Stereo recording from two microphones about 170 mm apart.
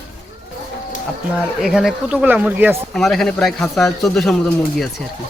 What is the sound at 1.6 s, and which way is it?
Speech, centre (ahead or behind).